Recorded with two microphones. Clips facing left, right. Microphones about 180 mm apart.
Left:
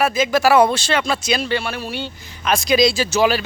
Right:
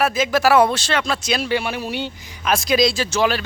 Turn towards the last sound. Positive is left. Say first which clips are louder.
# left 2 dB
turn(degrees=5)  # may be behind; listen again after turning